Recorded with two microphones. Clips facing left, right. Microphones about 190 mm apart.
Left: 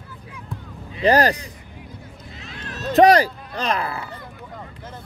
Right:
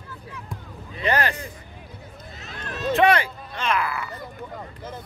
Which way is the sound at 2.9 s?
35° left (ahead or behind).